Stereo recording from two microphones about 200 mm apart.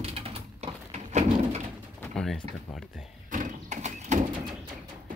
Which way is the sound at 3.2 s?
40° right (ahead or behind).